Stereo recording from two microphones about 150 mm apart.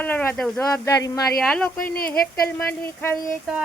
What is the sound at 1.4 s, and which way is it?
Speech, 5° left (ahead or behind).